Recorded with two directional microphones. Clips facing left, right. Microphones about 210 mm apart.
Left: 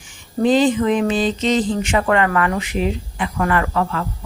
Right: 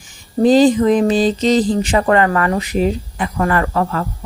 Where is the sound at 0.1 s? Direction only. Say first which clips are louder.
Right 4 dB; 40° right (ahead or behind).